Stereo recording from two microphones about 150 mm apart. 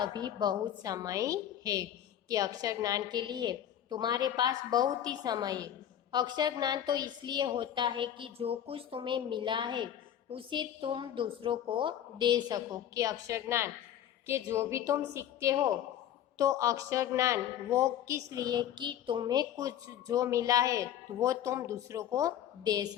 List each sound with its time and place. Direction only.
0.0 s a woman's voice: 30° right (ahead or behind)